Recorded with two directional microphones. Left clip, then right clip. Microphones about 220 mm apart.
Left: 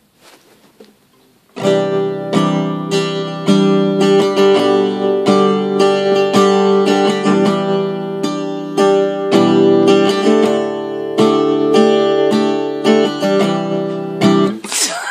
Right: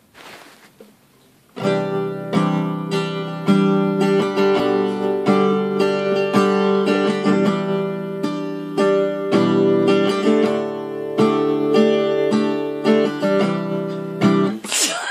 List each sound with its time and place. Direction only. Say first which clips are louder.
1.6 s music: left 6 dB; 35° left (ahead or behind)
14.7 s music: left 2 dB; 20° left (ahead or behind)